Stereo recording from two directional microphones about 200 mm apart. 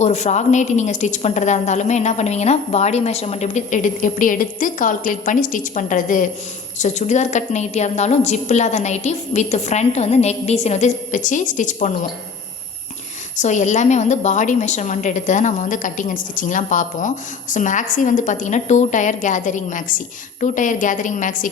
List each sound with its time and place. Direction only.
0.0 s a woman's voice: 35° left (ahead or behind)
13.3 s a woman's voice: 35° left (ahead or behind)